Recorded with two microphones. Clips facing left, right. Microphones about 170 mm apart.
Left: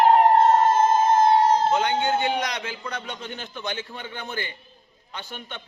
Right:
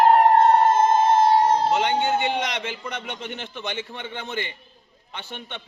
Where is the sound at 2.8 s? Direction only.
20° right (ahead or behind).